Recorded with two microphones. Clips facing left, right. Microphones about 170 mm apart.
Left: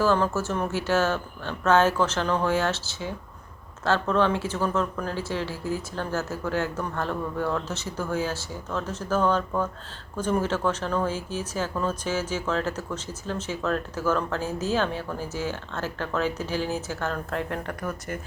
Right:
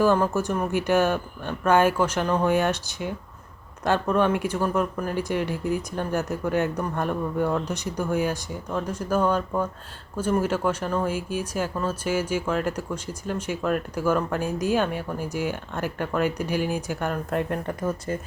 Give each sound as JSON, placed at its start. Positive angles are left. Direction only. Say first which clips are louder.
{"t": 0.0, "sound": "speech", "louder": "right 2 dB", "side_deg": -15}